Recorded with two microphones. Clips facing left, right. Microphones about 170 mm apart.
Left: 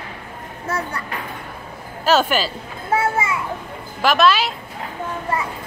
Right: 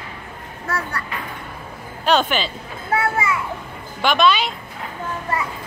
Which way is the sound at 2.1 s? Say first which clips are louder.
Left 1 dB; 5° left (ahead or behind).